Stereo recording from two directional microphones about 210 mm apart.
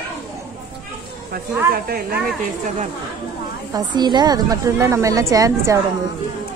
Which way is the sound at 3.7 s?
20° right (ahead or behind).